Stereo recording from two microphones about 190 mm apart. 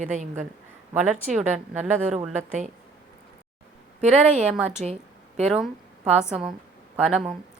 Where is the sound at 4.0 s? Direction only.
40° right (ahead or behind).